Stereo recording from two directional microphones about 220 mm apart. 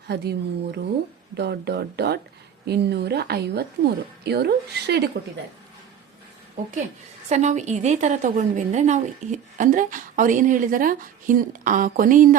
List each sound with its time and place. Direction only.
0.1 s a woman's voice: 50° right (ahead or behind)
7.3 s a woman's voice: 30° right (ahead or behind)